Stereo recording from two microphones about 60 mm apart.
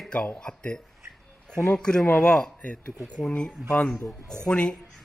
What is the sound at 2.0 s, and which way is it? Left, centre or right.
Speech, left.